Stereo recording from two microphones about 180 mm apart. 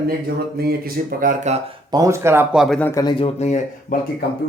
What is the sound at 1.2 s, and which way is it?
Speech, 45° right (ahead or behind).